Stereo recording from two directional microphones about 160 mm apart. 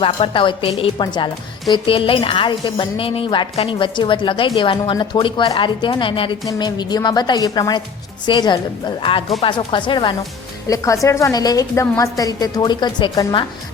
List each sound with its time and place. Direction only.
0.0 s a woman's voice: 30° left (ahead or behind)
10.7 s a woman's voice: 20° left (ahead or behind)